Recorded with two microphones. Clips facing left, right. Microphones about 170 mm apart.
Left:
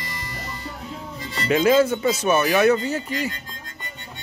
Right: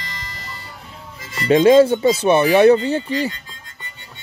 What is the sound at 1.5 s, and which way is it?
Speech, 30° right (ahead or behind).